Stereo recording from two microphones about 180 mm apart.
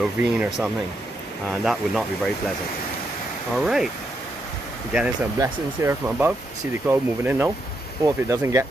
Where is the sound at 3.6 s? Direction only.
Centre (ahead or behind).